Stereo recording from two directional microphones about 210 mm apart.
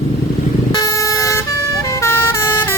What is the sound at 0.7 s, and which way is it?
Vehicle, 20° left (ahead or behind).